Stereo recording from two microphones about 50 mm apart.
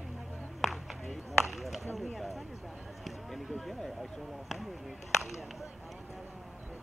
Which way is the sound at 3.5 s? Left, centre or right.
Centre.